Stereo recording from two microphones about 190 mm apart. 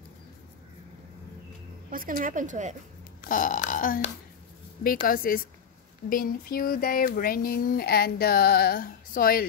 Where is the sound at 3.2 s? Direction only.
45° left (ahead or behind).